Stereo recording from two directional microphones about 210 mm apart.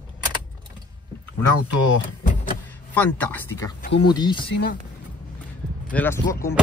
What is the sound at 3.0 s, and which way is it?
Speech, 10° left (ahead or behind).